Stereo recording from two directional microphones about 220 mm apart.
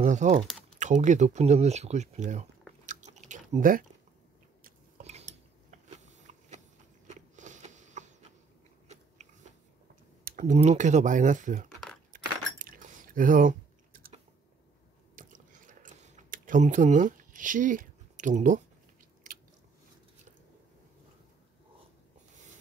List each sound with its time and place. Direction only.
0.0 s speech: 30° right (ahead or behind)
2.9 s chewing: 35° right (ahead or behind)
5.7 s biting: 35° right (ahead or behind)
7.1 s a sound: 35° right (ahead or behind)
8.8 s biting: 30° right (ahead or behind)
10.2 s speech: 35° right (ahead or behind)
12.1 s keys jangling: 40° right (ahead or behind)
15.1 s chewing: 35° right (ahead or behind)